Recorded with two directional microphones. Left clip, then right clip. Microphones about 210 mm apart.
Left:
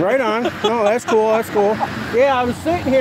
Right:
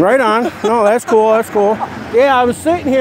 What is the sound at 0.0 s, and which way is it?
Speech, 50° right (ahead or behind).